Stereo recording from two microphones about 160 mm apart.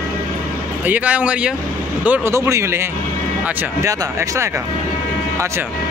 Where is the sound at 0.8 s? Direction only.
10° right (ahead or behind).